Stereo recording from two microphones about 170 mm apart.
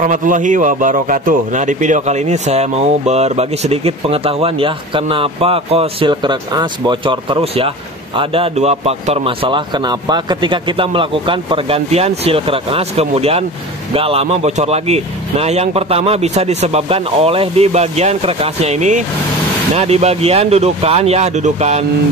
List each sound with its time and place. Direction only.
0.0 s a man's voice: 50° right (ahead or behind)